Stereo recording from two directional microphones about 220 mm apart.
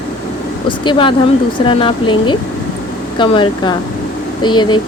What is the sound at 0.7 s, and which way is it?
Speech, 20° left (ahead or behind).